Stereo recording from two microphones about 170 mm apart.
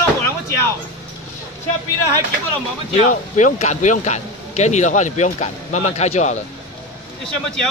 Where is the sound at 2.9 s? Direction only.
40° left (ahead or behind).